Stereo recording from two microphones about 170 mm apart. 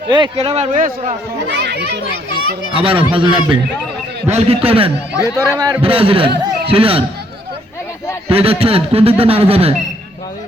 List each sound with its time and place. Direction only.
0.1 s a man's voice: 30° right (ahead or behind); by 1.1 s 50° right (ahead or behind)
1.5 s a child's voice: 90° right
2.7 s a man's voice: 30° right (ahead or behind)
5.1 s a man's voice: 15° left (ahead or behind)
5.8 s a man's voice: 35° right (ahead or behind)
8.3 s a man's voice: 35° right (ahead or behind)